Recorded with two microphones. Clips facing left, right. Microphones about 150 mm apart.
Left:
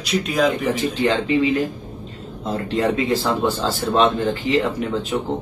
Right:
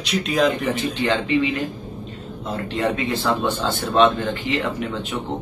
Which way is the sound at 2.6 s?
35° left (ahead or behind).